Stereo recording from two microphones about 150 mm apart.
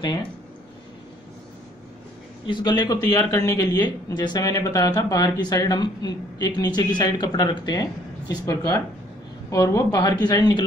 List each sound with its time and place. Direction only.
2.4 s a man's voice: 30° left (ahead or behind)